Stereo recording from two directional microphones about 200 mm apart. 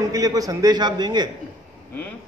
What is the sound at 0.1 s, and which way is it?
A man's voice, 20° right (ahead or behind).